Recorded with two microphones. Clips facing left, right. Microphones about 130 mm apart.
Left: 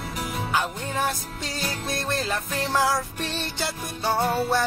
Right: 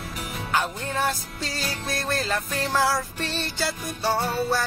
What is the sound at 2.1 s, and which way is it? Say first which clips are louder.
Music: even; 20° left (ahead or behind).